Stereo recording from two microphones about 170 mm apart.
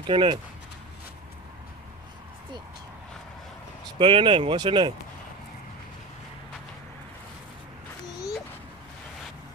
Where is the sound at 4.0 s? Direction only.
30° right (ahead or behind).